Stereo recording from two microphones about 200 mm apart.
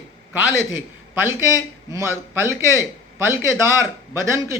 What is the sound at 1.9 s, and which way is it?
Speech, 15° right (ahead or behind).